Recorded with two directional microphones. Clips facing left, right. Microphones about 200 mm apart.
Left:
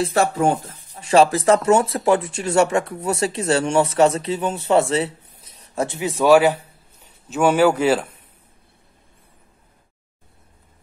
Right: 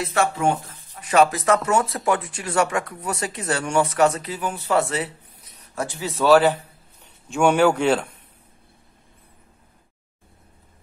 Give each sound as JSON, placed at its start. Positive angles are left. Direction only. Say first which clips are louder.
{"t": 0.0, "sound": "speech", "louder": "left 3 dB", "side_deg": 35}